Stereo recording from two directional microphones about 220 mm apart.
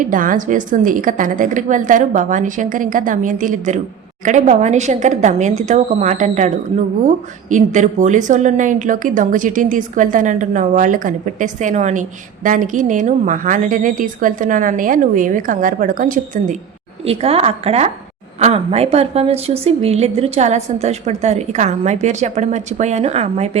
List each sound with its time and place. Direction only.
0.0 s a woman's voice: 35° right (ahead or behind)
7.5 s a woman's voice: 35° right (ahead or behind)